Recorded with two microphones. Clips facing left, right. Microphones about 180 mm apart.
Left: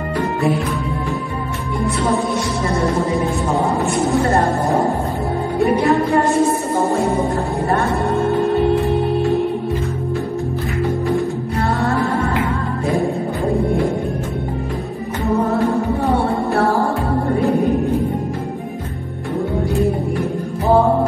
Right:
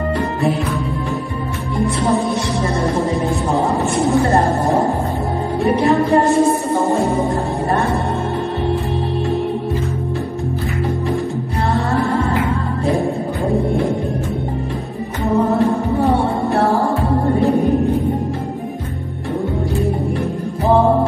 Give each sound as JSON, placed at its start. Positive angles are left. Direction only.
{"t": 5.7, "sound": "music", "side_deg": -25}